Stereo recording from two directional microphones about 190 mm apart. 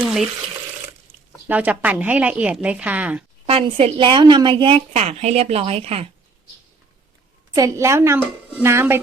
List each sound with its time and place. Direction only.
1.5 s a woman's voice: 5° right (ahead or behind)
3.4 s a woman's voice: 30° right (ahead or behind)
7.5 s a woman's voice: 15° right (ahead or behind)